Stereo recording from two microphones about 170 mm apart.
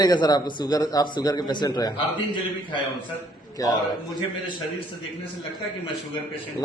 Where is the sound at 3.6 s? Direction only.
20° left (ahead or behind).